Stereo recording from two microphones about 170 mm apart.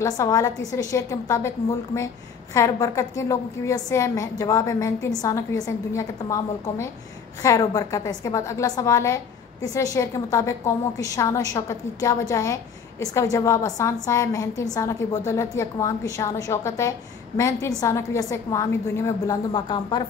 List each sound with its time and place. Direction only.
0.0 s a woman's voice: 20° left (ahead or behind)
2.5 s a woman's voice: 20° left (ahead or behind)